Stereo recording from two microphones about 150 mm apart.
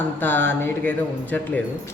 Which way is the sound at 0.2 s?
15° left (ahead or behind).